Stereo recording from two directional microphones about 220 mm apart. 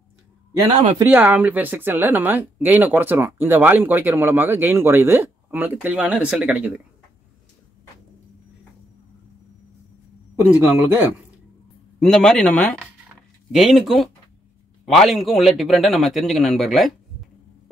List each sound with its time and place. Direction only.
0.9 s speech: 10° right (ahead or behind)
10.5 s speech: 10° right (ahead or behind)
12.0 s a man's voice: centre (ahead or behind)